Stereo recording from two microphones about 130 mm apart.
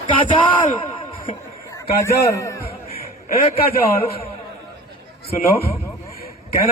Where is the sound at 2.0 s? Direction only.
20° left (ahead or behind).